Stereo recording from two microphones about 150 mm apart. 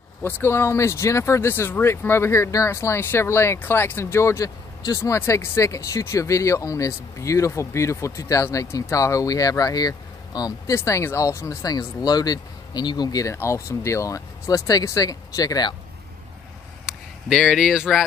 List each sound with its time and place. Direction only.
0.2 s speech: 15° left (ahead or behind)
16.8 s a sound: centre (ahead or behind)
17.7 s speech: centre (ahead or behind)